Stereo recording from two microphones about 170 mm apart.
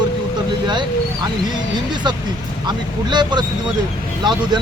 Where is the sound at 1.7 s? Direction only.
25° right (ahead or behind).